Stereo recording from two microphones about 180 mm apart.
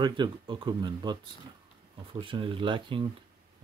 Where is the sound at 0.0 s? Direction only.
25° right (ahead or behind).